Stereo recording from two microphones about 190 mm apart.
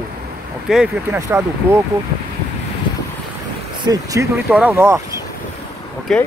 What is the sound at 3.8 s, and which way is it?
Speech, 20° right (ahead or behind).